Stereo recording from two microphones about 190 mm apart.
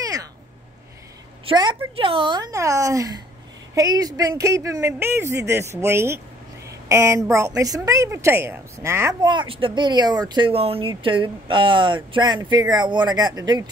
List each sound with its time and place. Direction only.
0.0 s cat: 20° right (ahead or behind)
1.4 s a woman's voice: 25° right (ahead or behind)